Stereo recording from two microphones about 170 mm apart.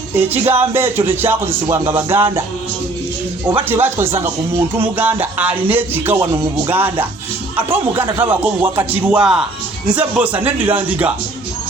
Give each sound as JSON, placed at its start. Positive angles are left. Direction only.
{"t": 0.2, "sound": "speech", "side_deg": -15}
{"t": 3.6, "sound": "speech", "side_deg": -10}